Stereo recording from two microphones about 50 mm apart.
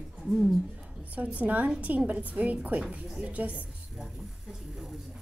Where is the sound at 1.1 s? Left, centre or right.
Right.